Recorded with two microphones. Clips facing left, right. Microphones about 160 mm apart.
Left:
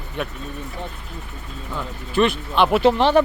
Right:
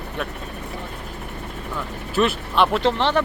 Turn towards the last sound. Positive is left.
turn(degrees=10)  # may be behind; listen again after turning